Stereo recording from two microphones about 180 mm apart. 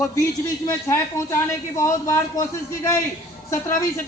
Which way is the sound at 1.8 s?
15° left (ahead or behind).